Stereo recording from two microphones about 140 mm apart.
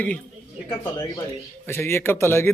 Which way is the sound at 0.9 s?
30° left (ahead or behind).